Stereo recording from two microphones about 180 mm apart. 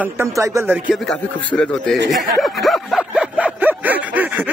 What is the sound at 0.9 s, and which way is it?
A man's voice, 5° left (ahead or behind).